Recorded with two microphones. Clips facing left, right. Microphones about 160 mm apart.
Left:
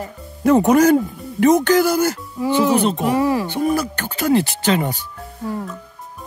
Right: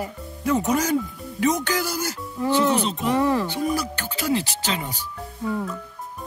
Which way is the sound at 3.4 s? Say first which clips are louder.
Left 5 dB; 55° left (ahead or behind).